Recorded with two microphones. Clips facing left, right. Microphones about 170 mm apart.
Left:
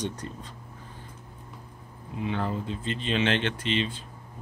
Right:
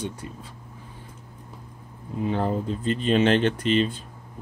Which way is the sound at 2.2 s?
40° right (ahead or behind).